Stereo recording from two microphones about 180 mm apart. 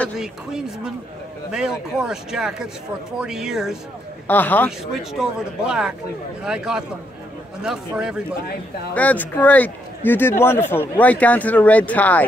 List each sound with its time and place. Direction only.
0.0 s speech: 5° right (ahead or behind)
4.3 s speech: 10° left (ahead or behind)
5.7 s speech: 5° right (ahead or behind)
8.9 s speech: 10° left (ahead or behind)